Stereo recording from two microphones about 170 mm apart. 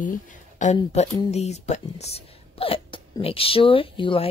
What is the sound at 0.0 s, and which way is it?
Speech, 50° left (ahead or behind).